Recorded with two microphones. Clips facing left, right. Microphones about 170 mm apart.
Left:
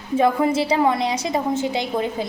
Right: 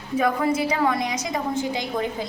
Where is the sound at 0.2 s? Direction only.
30° left (ahead or behind).